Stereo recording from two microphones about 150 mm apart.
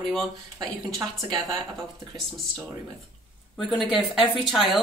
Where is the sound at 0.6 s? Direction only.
25° right (ahead or behind).